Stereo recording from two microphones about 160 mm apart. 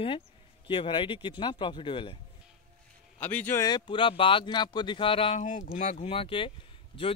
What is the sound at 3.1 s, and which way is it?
Speech, 10° left (ahead or behind).